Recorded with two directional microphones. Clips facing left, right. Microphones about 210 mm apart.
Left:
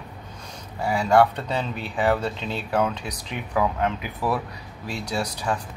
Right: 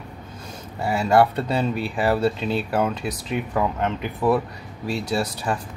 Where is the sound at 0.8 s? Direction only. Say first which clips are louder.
Right 1 dB; 5° right (ahead or behind).